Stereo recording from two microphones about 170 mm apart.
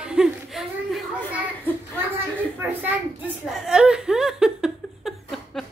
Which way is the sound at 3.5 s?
5° right (ahead or behind).